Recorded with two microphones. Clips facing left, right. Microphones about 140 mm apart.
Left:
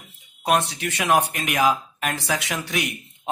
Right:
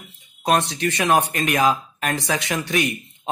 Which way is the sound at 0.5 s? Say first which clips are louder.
Right 2 dB; 5° left (ahead or behind).